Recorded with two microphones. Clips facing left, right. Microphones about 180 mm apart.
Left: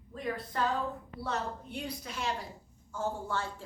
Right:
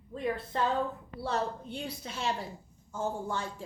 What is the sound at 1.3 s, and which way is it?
A woman's voice, 25° right (ahead or behind).